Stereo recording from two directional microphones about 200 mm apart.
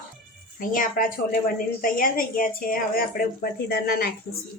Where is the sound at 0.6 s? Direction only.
45° left (ahead or behind).